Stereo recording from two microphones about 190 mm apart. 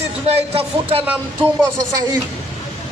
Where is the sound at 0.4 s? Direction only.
30° right (ahead or behind).